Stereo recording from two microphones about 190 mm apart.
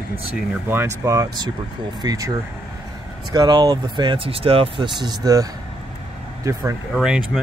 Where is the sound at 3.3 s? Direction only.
20° right (ahead or behind).